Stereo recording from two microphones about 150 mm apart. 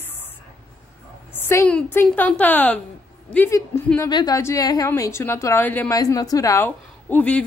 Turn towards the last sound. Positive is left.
turn(degrees=10)  # may be behind; listen again after turning